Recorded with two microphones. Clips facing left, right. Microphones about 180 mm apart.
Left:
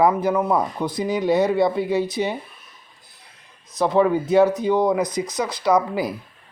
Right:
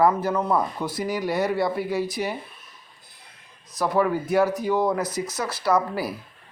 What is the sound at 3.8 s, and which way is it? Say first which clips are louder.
A man's voice: left 4 dB; 20° left (ahead or behind).